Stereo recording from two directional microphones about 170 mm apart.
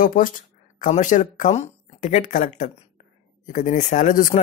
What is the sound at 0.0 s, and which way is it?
Speech, 55° left (ahead or behind).